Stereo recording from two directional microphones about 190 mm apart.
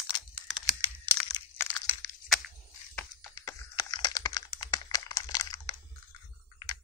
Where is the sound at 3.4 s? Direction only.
20° left (ahead or behind).